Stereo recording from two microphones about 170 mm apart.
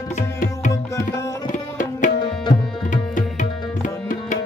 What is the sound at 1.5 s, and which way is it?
Tabla, 50° left (ahead or behind).